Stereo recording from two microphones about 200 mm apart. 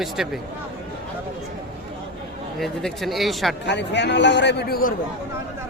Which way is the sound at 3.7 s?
60° left (ahead or behind).